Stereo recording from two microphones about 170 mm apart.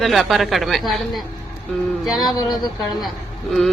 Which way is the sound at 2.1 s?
25° left (ahead or behind).